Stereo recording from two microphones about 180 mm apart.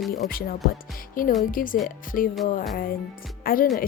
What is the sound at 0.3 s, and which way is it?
A woman's voice, 55° left (ahead or behind).